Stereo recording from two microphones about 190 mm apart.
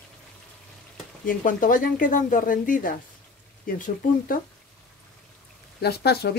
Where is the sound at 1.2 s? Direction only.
45° left (ahead or behind).